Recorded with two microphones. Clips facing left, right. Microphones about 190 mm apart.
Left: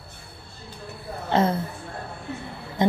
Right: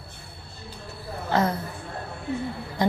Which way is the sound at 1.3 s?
25° left (ahead or behind).